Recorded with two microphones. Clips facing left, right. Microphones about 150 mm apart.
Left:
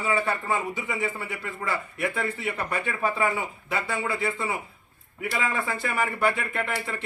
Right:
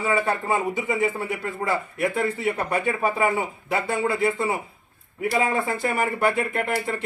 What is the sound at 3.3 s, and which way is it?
A man's voice, 45° right (ahead or behind).